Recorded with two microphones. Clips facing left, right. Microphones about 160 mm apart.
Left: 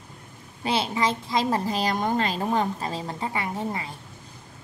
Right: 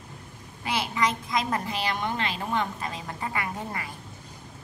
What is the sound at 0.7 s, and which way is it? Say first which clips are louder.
A child's voice: left 3 dB; 25° left (ahead or behind).